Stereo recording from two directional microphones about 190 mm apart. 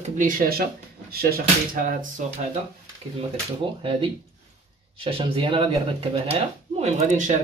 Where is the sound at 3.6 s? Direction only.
25° right (ahead or behind).